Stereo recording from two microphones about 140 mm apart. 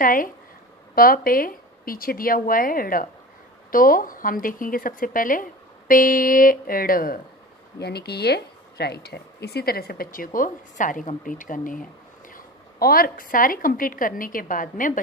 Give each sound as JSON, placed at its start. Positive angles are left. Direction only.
{"t": 0.0, "sound": "speech", "side_deg": 80}
{"t": 0.9, "sound": "speech", "side_deg": 90}
{"t": 7.8, "sound": "speech", "side_deg": 20}
{"t": 9.6, "sound": "a woman's voice", "side_deg": 90}
{"t": 12.3, "sound": "a woman's voice", "side_deg": 85}